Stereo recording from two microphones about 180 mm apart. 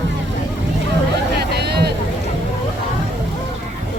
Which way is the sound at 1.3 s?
65° right (ahead or behind).